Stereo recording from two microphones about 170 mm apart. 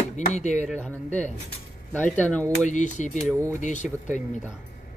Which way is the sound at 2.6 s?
45° left (ahead or behind).